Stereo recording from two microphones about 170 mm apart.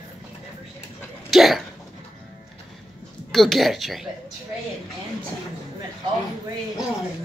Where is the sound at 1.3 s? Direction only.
Centre (ahead or behind).